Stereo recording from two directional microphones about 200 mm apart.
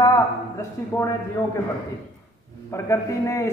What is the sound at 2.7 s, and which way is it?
Speech, 15° left (ahead or behind).